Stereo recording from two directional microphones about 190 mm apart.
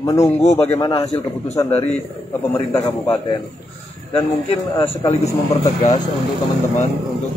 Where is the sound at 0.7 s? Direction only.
20° left (ahead or behind).